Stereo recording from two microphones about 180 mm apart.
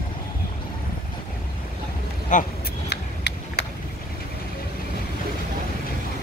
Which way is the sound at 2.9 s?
65° left (ahead or behind).